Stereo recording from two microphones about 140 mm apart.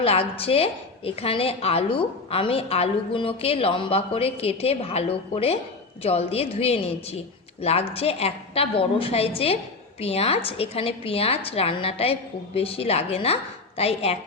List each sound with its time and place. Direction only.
0.0 s a woman's voice: 45° left (ahead or behind)